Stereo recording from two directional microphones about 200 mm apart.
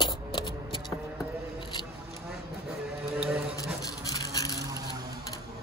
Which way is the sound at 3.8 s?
20° left (ahead or behind).